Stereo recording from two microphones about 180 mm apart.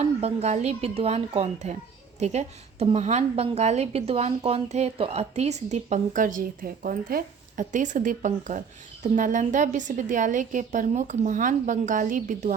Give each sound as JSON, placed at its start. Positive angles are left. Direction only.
{"t": 0.0, "sound": "a woman's voice", "side_deg": -35}